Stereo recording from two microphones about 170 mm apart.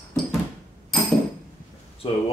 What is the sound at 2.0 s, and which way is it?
Speech, 35° left (ahead or behind).